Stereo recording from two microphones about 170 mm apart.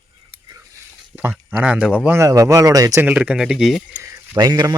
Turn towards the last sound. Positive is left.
turn(degrees=-20)  # may be behind; listen again after turning